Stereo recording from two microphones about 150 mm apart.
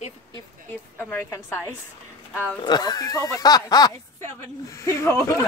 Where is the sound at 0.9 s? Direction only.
15° left (ahead or behind).